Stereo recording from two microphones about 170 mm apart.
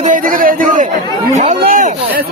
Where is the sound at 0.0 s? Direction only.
50° right (ahead or behind).